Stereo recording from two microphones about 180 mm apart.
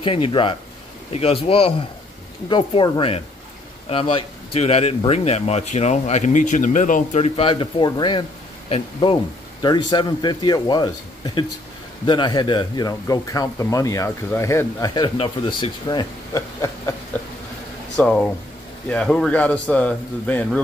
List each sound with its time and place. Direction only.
0.0 s speech: 30° left (ahead or behind)
15.1 s speech: 30° left (ahead or behind)
17.9 s speech: 5° left (ahead or behind)